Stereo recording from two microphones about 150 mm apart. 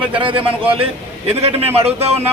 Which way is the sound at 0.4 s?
40° right (ahead or behind).